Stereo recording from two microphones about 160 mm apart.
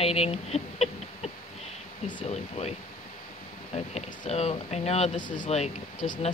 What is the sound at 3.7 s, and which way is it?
Speech, 40° left (ahead or behind).